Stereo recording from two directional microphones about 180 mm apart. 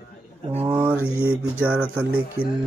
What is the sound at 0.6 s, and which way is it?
Mantra, 10° right (ahead or behind).